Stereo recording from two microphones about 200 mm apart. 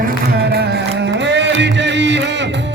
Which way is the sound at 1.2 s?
60° right (ahead or behind).